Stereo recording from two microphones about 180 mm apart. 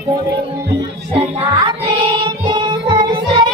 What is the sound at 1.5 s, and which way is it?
Music, 25° right (ahead or behind).